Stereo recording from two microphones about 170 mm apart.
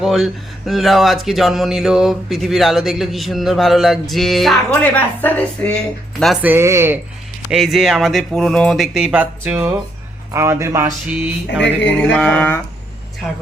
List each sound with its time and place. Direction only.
0.0 s speech: centre (ahead or behind)
6.4 s speech: 15° right (ahead or behind)
7.5 s speech: centre (ahead or behind); by 10.9 s 20° right (ahead or behind)
11.5 s speech: 90° left
12.0 s a sound: 5° left (ahead or behind)